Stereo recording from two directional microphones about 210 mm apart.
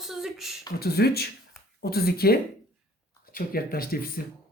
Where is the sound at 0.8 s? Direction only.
50° left (ahead or behind).